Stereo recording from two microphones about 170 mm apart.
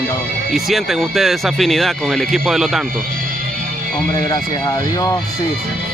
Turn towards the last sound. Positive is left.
turn(degrees=25)  # may be behind; listen again after turning